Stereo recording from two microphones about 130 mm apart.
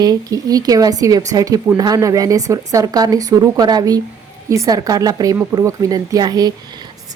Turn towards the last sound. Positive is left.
turn(degrees=-30)  # may be behind; listen again after turning